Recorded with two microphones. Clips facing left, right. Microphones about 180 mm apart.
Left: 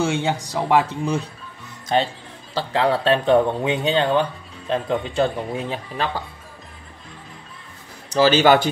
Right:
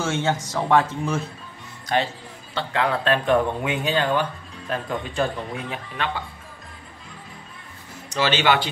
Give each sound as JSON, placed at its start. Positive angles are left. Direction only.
{"t": 0.0, "sound": "speech", "side_deg": 15}
{"t": 2.5, "sound": "speech", "side_deg": 30}
{"t": 8.1, "sound": "a man's voice", "side_deg": 40}